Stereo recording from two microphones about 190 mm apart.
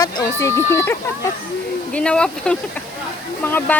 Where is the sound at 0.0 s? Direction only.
15° left (ahead or behind).